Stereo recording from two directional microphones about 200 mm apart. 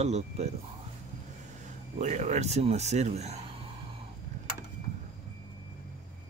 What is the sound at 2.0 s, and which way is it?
Speech, 35° right (ahead or behind).